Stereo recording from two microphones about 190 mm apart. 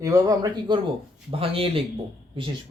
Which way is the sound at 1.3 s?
30° right (ahead or behind).